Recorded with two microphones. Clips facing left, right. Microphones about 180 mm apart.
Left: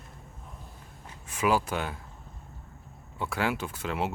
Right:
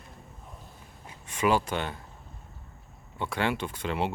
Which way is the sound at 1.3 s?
5° left (ahead or behind).